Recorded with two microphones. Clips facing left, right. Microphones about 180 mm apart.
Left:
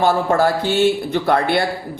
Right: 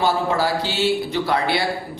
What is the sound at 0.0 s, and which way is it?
Speech, 50° left (ahead or behind).